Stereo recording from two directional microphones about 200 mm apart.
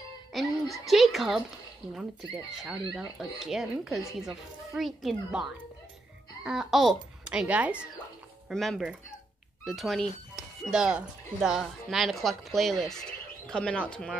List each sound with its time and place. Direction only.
0.3 s music: centre (ahead or behind)
0.8 s speech: centre (ahead or behind)